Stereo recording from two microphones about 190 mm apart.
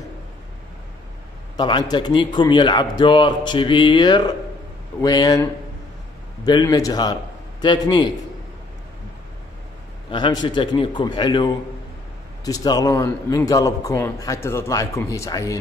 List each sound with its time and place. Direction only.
1.6 s a man's voice: 25° left (ahead or behind)
10.1 s a man's voice: 25° left (ahead or behind)